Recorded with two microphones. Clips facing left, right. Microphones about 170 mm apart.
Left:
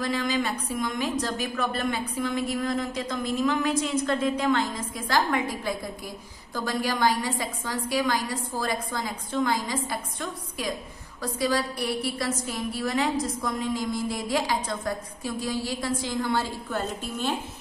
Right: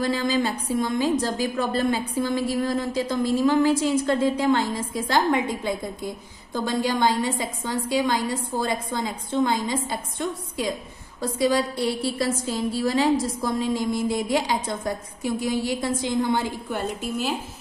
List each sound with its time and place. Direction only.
0.0 s a woman's voice: 30° right (ahead or behind); by 17.4 s 10° right (ahead or behind)